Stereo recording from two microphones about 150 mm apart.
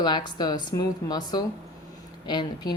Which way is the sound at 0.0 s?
30° left (ahead or behind).